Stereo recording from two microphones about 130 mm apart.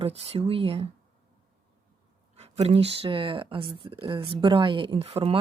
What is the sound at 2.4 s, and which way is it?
Speech, 55° right (ahead or behind).